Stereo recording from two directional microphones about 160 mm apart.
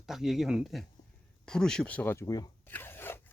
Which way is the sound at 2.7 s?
15° left (ahead or behind).